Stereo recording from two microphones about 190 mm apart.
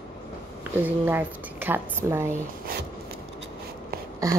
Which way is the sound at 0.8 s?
10° right (ahead or behind).